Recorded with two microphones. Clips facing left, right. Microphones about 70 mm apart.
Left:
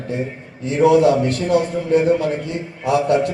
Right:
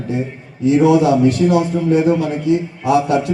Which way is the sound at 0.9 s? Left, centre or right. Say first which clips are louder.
Left 2 dB; centre.